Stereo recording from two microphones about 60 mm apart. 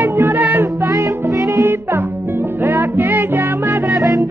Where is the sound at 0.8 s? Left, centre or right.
Right.